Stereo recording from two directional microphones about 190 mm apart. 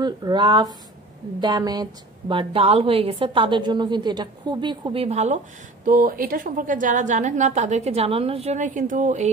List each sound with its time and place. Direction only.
0.0 s a woman's voice: 25° right (ahead or behind)
5.9 s a woman's voice: 45° right (ahead or behind)